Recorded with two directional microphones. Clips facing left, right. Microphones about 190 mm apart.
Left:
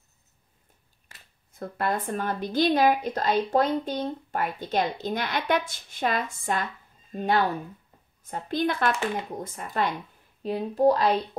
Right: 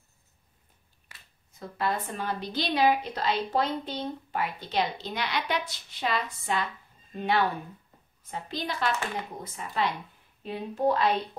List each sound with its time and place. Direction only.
1.6 s a woman's voice: 50° left (ahead or behind)
10.4 s speech: 40° left (ahead or behind)